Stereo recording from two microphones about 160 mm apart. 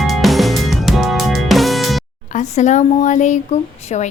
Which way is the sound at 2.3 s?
45° left (ahead or behind).